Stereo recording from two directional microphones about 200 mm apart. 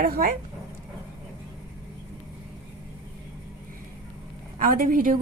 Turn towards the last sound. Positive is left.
turn(degrees=-45)  # may be behind; listen again after turning